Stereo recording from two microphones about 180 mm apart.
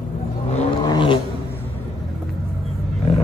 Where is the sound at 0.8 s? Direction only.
25° left (ahead or behind).